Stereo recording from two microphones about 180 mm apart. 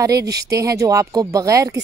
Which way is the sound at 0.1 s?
65° right (ahead or behind).